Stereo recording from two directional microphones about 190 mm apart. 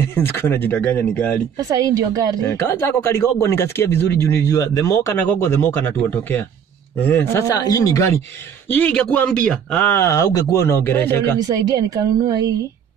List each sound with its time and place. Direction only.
0.1 s speech: 10° left (ahead or behind)
1.6 s a woman's voice: 20° right (ahead or behind)
2.4 s speech: 15° left (ahead or behind)
11.3 s a woman's voice: 20° right (ahead or behind)